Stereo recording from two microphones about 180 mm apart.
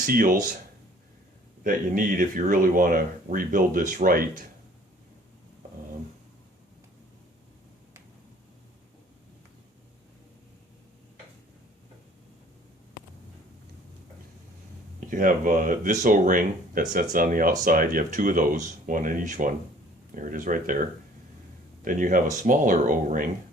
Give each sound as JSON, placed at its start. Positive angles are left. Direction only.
{"t": 0.0, "sound": "speech", "side_deg": -50}
{"t": 1.6, "sound": "speech", "side_deg": -50}
{"t": 15.1, "sound": "speech", "side_deg": -50}
{"t": 21.8, "sound": "speech", "side_deg": -45}